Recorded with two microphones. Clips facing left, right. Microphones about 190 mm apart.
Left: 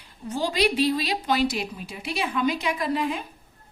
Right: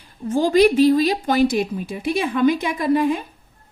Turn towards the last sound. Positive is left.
turn(degrees=-50)  # may be behind; listen again after turning